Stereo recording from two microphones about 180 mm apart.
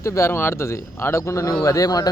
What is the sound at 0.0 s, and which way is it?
A man's voice, 15° left (ahead or behind).